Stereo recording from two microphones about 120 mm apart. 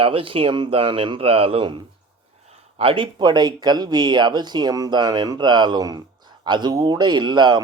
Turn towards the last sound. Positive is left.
turn(degrees=-35)  # may be behind; listen again after turning